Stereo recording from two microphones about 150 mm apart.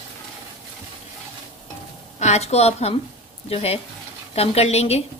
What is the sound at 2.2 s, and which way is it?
A woman's voice, 45° left (ahead or behind).